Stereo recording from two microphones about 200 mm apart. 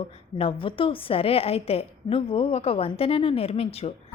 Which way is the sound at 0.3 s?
25° left (ahead or behind).